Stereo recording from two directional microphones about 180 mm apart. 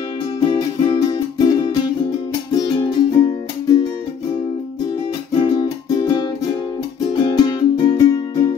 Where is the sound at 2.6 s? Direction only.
20° left (ahead or behind).